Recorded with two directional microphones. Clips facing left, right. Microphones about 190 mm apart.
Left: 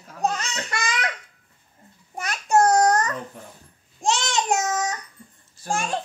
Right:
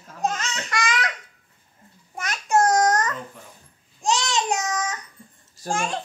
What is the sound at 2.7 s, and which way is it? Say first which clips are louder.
Babbling: left 1 dB; 30° left (ahead or behind).